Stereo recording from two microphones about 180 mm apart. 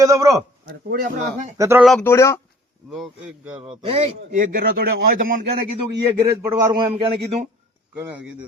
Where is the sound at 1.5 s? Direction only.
15° right (ahead or behind).